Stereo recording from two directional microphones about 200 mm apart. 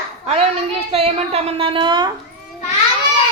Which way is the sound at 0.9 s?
30° right (ahead or behind).